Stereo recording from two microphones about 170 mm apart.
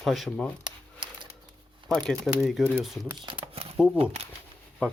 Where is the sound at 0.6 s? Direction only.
25° right (ahead or behind).